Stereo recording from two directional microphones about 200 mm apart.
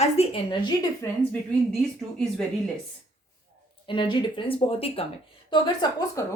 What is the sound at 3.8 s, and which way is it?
Speech, 25° left (ahead or behind).